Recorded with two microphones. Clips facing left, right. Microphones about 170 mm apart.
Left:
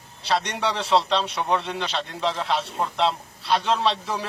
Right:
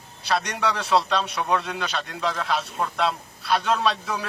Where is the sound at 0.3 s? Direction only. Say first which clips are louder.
Even; 30° left (ahead or behind).